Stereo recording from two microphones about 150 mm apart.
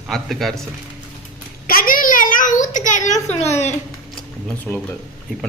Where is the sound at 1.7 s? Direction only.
75° left (ahead or behind); by 3.7 s 45° left (ahead or behind).